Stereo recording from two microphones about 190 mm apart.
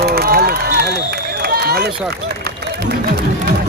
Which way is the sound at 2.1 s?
60° right (ahead or behind).